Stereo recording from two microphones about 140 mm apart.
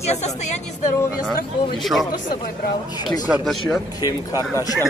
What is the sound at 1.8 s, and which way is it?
Speech, centre (ahead or behind).